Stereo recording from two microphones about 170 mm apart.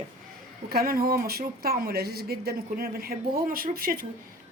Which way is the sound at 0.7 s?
60° right (ahead or behind).